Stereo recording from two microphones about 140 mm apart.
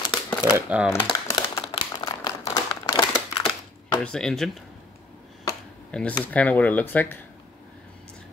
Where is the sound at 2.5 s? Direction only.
25° left (ahead or behind).